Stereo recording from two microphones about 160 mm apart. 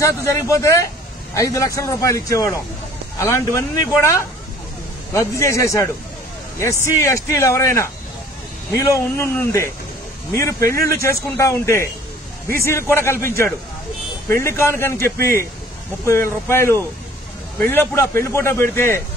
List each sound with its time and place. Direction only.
0.0 s a man's voice: 20° left (ahead or behind)
5.1 s a man's voice: 15° left (ahead or behind)